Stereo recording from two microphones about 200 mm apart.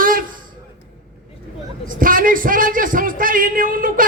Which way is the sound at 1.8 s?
45° right (ahead or behind).